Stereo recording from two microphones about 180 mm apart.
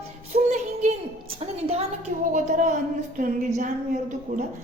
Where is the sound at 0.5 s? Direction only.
40° right (ahead or behind).